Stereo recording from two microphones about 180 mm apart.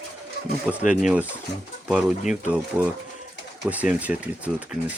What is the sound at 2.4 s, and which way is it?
Speech, 5° right (ahead or behind).